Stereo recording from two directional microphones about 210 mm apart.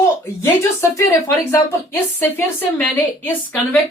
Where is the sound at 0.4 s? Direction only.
15° left (ahead or behind).